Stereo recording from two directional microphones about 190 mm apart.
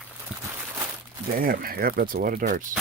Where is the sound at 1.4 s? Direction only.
50° right (ahead or behind).